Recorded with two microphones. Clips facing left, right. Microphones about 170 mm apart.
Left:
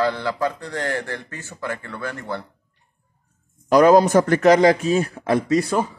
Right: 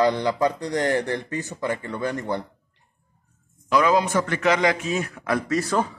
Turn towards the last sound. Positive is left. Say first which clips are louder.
# left 3 dB
turn(degrees=10)  # may be behind; listen again after turning